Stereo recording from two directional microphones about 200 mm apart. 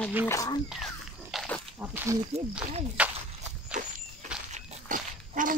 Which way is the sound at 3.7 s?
40° right (ahead or behind).